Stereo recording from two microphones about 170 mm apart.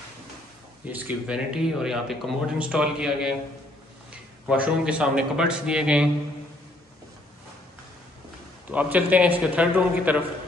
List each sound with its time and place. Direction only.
0.8 s a man's voice: 10° right (ahead or behind)
8.7 s a man's voice: 10° right (ahead or behind)